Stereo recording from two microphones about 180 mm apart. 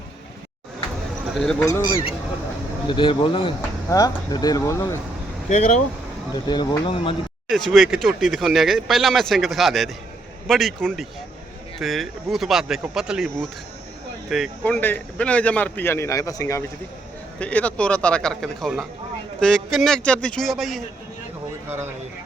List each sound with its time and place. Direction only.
1.3 s speech: centre (ahead or behind)
1.6 s speech: 20° left (ahead or behind)
2.9 s speech: 25° left (ahead or behind)
5.5 s speech: 40° left (ahead or behind)
6.3 s speech: 25° left (ahead or behind)
7.5 s speech: centre (ahead or behind)
14.6 s a man's voice: 10° left (ahead or behind)
21.7 s speech: 10° right (ahead or behind)